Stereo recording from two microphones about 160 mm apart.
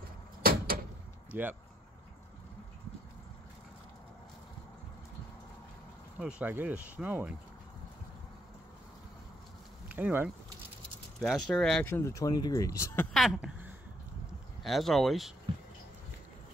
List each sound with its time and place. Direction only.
0.4 s door: 65° right (ahead or behind)
1.3 s speech: 10° right (ahead or behind)
6.1 s speech: 5° right (ahead or behind)
9.8 s speech: 10° right (ahead or behind)
11.1 s speech: centre (ahead or behind)
11.9 s speech: 20° left (ahead or behind)
13.1 s speech: centre (ahead or behind)